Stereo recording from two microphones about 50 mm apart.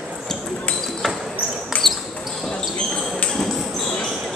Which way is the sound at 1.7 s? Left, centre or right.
Left.